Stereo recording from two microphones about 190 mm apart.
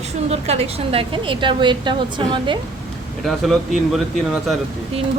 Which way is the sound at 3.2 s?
Centre (ahead or behind).